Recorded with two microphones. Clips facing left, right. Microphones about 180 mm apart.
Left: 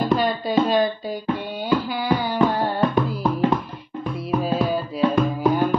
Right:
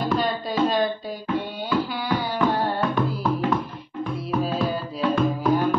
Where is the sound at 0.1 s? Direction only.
Centre (ahead or behind).